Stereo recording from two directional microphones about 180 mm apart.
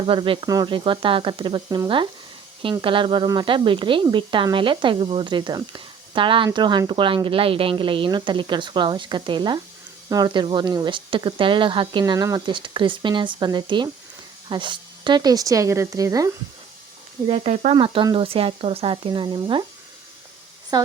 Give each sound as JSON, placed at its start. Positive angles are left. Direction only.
{"t": 0.1, "sound": "a woman's voice", "side_deg": -25}
{"t": 17.2, "sound": "speech", "side_deg": -35}